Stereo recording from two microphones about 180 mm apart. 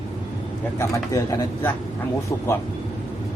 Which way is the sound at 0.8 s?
15° left (ahead or behind).